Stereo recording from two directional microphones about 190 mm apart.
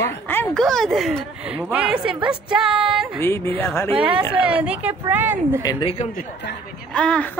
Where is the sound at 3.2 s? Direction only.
10° left (ahead or behind).